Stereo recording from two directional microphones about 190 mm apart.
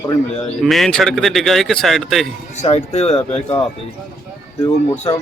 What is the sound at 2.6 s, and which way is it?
Speech, 35° left (ahead or behind).